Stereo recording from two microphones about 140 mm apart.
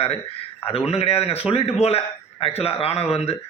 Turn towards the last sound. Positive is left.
turn(degrees=45)  # may be behind; listen again after turning